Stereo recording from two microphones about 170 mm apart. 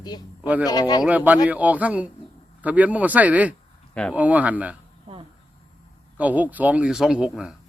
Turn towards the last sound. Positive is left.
turn(degrees=-5)  # may be behind; listen again after turning